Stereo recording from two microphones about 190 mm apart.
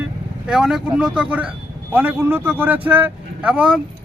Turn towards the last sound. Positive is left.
turn(degrees=-5)  # may be behind; listen again after turning